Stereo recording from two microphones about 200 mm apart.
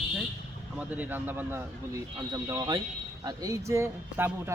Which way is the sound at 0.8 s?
10° right (ahead or behind).